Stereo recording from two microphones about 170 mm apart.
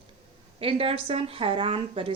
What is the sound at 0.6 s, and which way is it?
A woman's voice, 35° right (ahead or behind).